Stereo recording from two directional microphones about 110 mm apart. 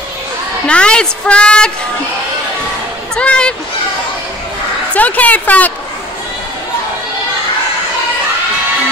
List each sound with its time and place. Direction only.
0.7 s a woman's voice: 10° left (ahead or behind)
3.2 s a woman's voice: 10° left (ahead or behind)
4.9 s a woman's voice: 15° left (ahead or behind)